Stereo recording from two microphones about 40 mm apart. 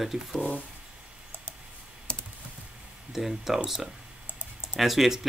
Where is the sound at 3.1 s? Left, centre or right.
Centre.